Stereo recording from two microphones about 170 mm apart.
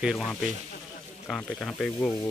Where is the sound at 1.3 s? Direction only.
5° left (ahead or behind).